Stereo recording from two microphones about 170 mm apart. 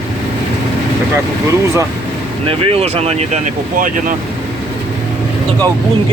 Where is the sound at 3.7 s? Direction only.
55° right (ahead or behind).